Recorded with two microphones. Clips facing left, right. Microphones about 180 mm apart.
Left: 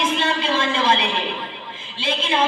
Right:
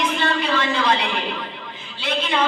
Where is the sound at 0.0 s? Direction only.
25° left (ahead or behind).